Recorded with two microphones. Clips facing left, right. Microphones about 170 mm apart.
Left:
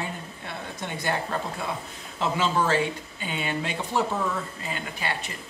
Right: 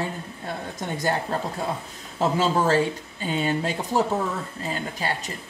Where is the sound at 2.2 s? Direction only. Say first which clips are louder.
Right 3 dB; 40° right (ahead or behind).